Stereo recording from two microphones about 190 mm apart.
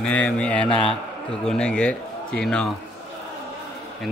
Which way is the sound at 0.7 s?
30° left (ahead or behind).